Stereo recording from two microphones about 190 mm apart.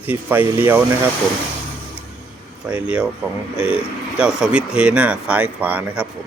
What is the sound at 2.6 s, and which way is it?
Speech, 5° right (ahead or behind).